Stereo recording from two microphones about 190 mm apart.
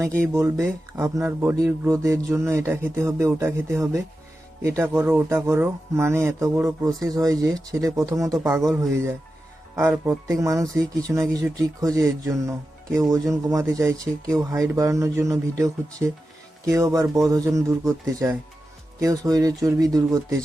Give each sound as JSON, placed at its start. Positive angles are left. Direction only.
{"t": 0.2, "sound": "speech", "side_deg": -15}